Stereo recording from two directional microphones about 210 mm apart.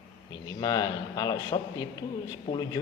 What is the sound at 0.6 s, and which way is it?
A man's voice, 20° left (ahead or behind).